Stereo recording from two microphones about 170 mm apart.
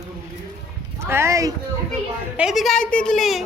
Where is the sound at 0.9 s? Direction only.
15° right (ahead or behind).